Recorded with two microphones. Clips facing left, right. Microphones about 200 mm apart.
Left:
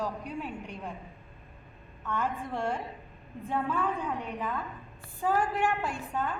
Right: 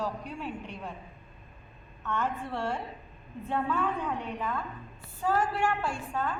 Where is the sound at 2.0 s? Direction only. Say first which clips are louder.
Even; 10° left (ahead or behind).